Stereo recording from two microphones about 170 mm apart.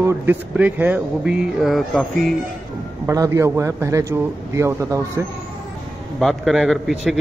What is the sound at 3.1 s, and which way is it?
Speech, 20° right (ahead or behind).